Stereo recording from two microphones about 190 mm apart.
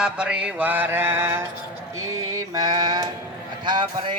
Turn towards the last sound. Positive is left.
turn(degrees=-20)  # may be behind; listen again after turning